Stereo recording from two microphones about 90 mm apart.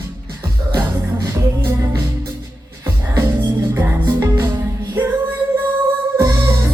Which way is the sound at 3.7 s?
30° right (ahead or behind).